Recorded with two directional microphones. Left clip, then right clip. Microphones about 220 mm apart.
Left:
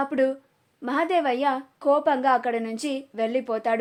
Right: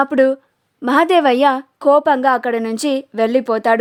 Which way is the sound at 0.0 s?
45° right (ahead or behind).